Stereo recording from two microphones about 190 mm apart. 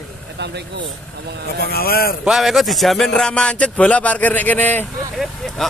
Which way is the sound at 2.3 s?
Centre (ahead or behind).